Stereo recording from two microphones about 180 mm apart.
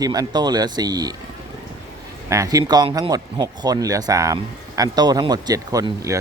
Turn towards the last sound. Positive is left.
turn(degrees=-20)  # may be behind; listen again after turning